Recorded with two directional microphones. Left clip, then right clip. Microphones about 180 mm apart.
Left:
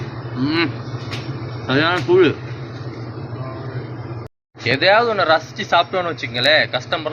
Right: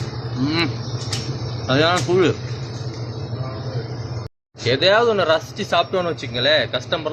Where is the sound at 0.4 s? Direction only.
20° right (ahead or behind).